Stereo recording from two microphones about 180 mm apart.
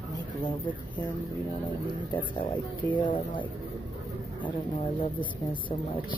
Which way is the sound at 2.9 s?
25° left (ahead or behind).